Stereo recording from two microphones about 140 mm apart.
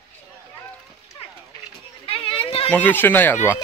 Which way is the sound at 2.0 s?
40° left (ahead or behind).